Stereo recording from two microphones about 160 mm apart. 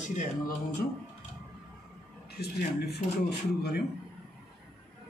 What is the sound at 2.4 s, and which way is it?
Speech, 85° left.